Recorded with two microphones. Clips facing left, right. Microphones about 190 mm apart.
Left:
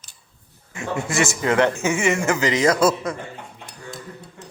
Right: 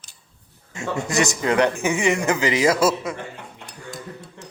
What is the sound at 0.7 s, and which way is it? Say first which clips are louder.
Speech: even; 25° right (ahead or behind).